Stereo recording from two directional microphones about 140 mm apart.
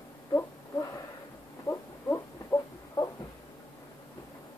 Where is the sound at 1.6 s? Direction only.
20° left (ahead or behind).